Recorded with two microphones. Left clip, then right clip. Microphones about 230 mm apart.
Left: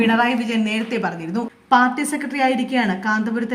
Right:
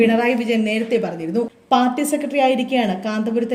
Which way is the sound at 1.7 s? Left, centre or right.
Left.